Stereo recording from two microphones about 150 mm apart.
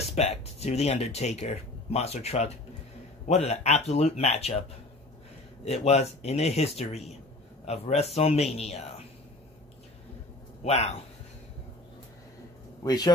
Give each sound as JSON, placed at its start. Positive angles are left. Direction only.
{"t": 0.1, "sound": "speech", "side_deg": 45}
{"t": 5.7, "sound": "speech", "side_deg": 45}
{"t": 10.6, "sound": "a man's voice", "side_deg": 45}
{"t": 12.8, "sound": "a man's voice", "side_deg": 25}